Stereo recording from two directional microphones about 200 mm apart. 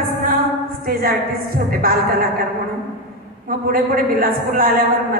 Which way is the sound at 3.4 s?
45° right (ahead or behind).